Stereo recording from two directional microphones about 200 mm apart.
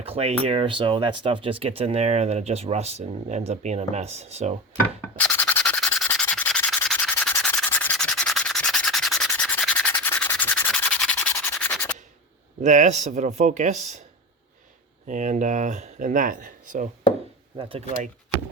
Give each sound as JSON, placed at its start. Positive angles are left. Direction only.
{"t": 0.0, "sound": "speech", "side_deg": -30}
{"t": 5.1, "sound": "rub", "side_deg": 10}
{"t": 12.6, "sound": "speech", "side_deg": -35}
{"t": 15.0, "sound": "speech", "side_deg": -40}
{"t": 17.6, "sound": "speech", "side_deg": -30}